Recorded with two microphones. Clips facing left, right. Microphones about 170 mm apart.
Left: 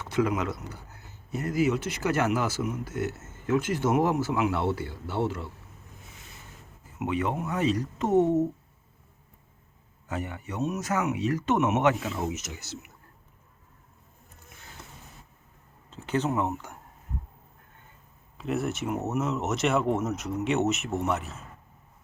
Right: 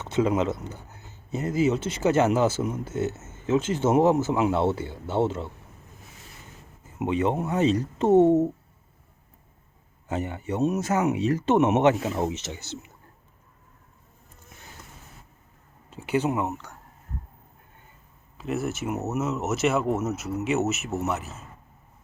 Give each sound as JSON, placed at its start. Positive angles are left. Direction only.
{"t": 0.0, "sound": "speech", "side_deg": -25}
{"t": 7.0, "sound": "speech", "side_deg": -25}
{"t": 10.1, "sound": "speech", "side_deg": -25}
{"t": 15.9, "sound": "speech", "side_deg": -10}
{"t": 18.3, "sound": "speech", "side_deg": 0}